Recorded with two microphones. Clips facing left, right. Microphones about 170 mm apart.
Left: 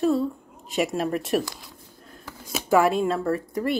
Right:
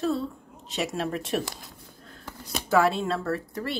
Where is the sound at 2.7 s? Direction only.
15° left (ahead or behind).